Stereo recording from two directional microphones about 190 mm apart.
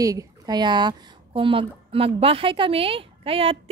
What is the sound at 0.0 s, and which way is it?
Speech, 20° right (ahead or behind).